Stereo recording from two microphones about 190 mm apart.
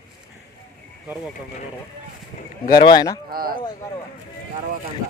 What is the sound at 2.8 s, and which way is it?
Speech, 20° left (ahead or behind).